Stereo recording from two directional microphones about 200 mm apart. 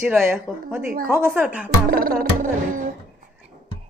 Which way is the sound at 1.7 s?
45° right (ahead or behind).